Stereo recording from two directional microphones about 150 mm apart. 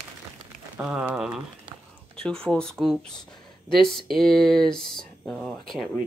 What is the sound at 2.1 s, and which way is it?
Speech, 5° left (ahead or behind).